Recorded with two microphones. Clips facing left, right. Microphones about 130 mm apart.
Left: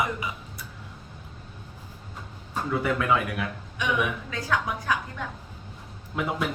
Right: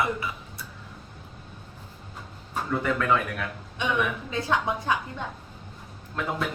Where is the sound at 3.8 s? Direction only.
25° right (ahead or behind).